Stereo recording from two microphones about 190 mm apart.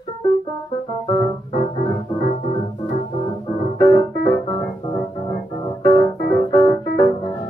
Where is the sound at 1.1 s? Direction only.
20° left (ahead or behind).